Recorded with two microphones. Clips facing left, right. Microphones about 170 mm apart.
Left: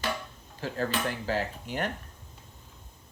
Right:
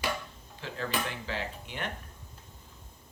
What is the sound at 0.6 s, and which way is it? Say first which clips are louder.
Speech: left 4 dB; 40° left (ahead or behind).